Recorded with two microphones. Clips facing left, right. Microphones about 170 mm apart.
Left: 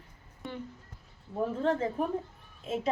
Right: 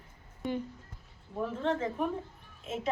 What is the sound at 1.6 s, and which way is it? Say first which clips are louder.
Speech: left 2 dB; 35° left (ahead or behind).